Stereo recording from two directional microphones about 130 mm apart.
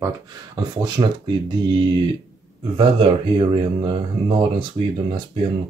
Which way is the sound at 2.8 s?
35° right (ahead or behind).